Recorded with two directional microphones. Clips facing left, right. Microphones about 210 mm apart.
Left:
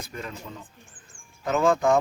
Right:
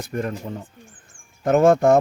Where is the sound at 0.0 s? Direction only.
50° right (ahead or behind).